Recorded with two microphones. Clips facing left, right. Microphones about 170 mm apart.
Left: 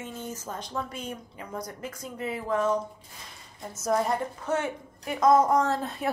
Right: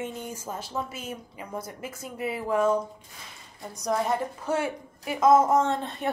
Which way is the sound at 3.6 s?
5° left (ahead or behind).